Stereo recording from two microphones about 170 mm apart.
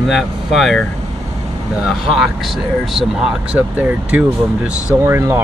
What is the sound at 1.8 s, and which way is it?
Speech, centre (ahead or behind).